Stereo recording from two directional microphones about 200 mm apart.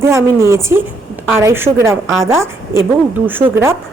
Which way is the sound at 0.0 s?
15° right (ahead or behind).